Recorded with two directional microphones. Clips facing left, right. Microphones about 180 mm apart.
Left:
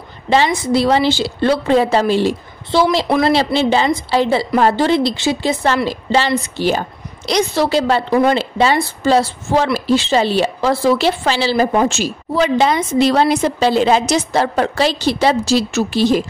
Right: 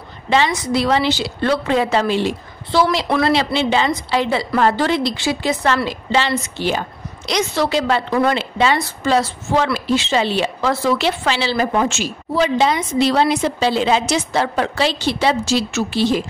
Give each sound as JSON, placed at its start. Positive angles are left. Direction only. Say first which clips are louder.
{"t": 0.3, "sound": "a woman's voice", "louder": "left 3 dB", "side_deg": 35}
{"t": 12.4, "sound": "a woman's voice", "louder": "left 2 dB", "side_deg": 50}